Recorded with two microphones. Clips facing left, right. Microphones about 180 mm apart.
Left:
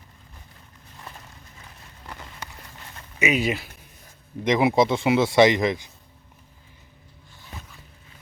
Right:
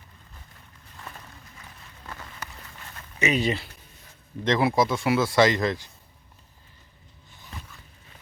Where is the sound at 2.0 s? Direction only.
15° left (ahead or behind).